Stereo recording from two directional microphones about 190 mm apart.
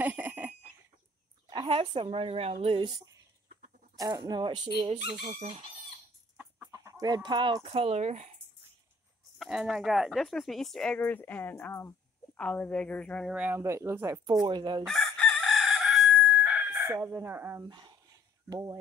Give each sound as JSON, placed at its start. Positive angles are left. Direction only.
{"t": 0.0, "sound": "a sound", "side_deg": -10}
{"t": 1.5, "sound": "speech", "side_deg": -25}
{"t": 5.4, "sound": "chicken", "side_deg": -30}
{"t": 6.3, "sound": "chicken", "side_deg": -15}
{"t": 7.2, "sound": "speech", "side_deg": -25}
{"t": 9.4, "sound": "speech", "side_deg": 0}
{"t": 13.3, "sound": "speech", "side_deg": -10}
{"t": 14.9, "sound": "chicken", "side_deg": 0}
{"t": 17.6, "sound": "dog", "side_deg": -25}